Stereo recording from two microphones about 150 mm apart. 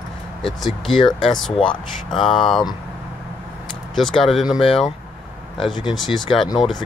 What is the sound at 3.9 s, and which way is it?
Speech, centre (ahead or behind).